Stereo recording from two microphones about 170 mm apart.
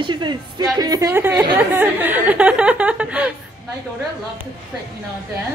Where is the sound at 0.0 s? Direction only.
25° right (ahead or behind); by 3.3 s 5° right (ahead or behind).